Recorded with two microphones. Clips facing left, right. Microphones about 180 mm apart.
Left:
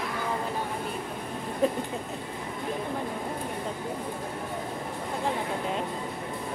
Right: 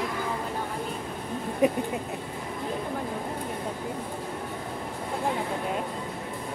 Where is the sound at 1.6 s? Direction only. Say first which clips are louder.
Right 3 dB; 15° right (ahead or behind).